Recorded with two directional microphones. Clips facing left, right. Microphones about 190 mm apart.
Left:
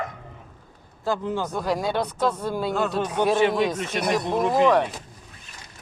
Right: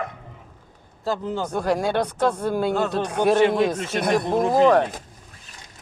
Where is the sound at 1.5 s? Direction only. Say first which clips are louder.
Right 5 dB; 55° right (ahead or behind).